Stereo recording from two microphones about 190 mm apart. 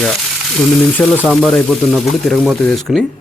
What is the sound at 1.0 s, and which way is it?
Speech, 5° left (ahead or behind).